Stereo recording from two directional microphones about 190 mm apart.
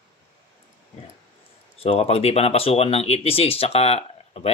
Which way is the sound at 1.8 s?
30° left (ahead or behind).